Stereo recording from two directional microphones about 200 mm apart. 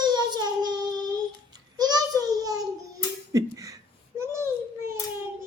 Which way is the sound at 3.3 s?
15° right (ahead or behind).